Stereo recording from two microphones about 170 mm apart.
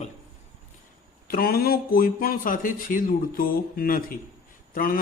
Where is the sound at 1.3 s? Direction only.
60° left (ahead or behind).